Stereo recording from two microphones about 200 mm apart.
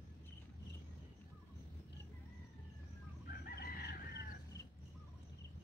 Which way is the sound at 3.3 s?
50° left (ahead or behind).